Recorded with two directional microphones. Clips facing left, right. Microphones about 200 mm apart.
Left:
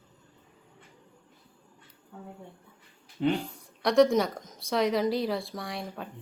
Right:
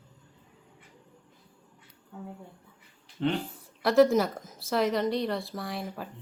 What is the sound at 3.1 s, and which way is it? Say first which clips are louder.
Speech: left 2 dB; 10° left (ahead or behind).